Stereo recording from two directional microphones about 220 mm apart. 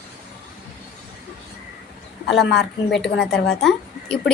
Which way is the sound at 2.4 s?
50° left (ahead or behind).